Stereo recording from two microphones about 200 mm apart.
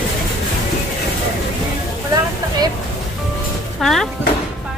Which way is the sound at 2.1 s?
20° right (ahead or behind).